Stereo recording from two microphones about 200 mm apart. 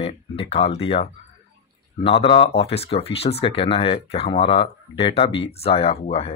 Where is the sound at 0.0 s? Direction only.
30° left (ahead or behind).